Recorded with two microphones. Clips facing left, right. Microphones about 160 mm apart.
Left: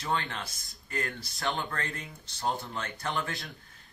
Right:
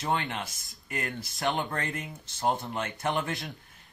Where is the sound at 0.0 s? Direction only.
20° right (ahead or behind).